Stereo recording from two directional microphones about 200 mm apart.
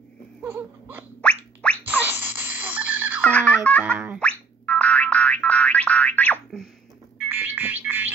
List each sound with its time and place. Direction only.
0.4 s baby cry: 10° right (ahead or behind)
1.2 s a sound: 5° left (ahead or behind)
2.0 s a sound: 10° right (ahead or behind)
3.2 s music: 5° left (ahead or behind)
3.7 s boing: 5° left (ahead or behind)
4.2 s music: 5° left (ahead or behind)
7.2 s music: 10° right (ahead or behind)